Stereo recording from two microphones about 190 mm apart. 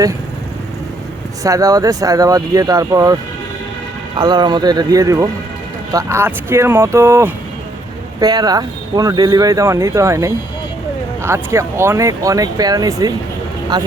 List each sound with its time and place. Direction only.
1.5 s speech: 20° right (ahead or behind)
4.2 s speech: 25° right (ahead or behind)